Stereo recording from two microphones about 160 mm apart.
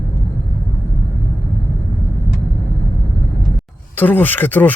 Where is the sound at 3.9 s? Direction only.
10° left (ahead or behind).